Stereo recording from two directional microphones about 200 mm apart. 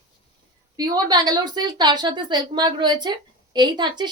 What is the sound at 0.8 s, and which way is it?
A woman's voice, 20° right (ahead or behind).